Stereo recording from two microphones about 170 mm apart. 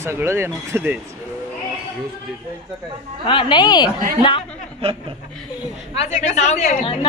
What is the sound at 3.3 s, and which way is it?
Speech, 30° left (ahead or behind).